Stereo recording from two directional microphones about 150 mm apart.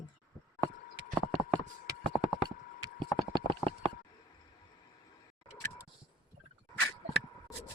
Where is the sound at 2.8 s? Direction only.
30° right (ahead or behind).